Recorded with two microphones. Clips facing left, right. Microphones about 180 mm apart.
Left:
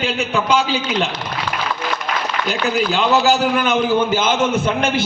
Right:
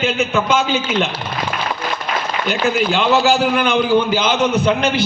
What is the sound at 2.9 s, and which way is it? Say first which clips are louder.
A man's voice: even; 40° left (ahead or behind).